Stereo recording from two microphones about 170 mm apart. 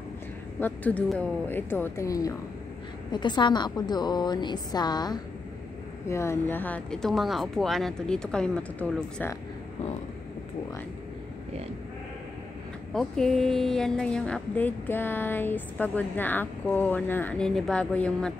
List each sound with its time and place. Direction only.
0.6 s a woman's voice: 10° left (ahead or behind)
12.9 s a woman's voice: centre (ahead or behind)